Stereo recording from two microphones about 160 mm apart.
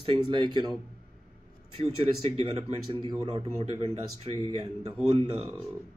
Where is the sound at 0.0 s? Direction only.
30° right (ahead or behind).